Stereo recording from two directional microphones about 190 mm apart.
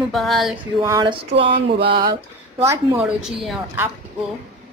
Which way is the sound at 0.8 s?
15° right (ahead or behind).